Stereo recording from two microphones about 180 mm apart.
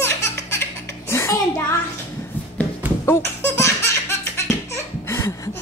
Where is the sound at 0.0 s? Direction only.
15° left (ahead or behind).